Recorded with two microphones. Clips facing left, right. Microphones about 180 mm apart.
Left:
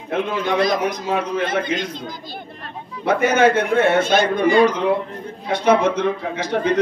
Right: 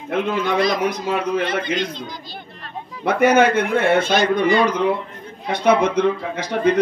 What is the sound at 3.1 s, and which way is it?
Speech, 55° right (ahead or behind).